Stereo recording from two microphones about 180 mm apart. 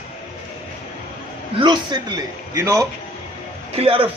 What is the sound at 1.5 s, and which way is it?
A man's voice, 25° right (ahead or behind).